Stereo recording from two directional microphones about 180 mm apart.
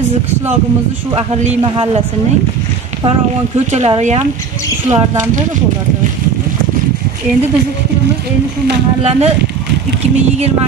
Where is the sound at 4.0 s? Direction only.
40° right (ahead or behind).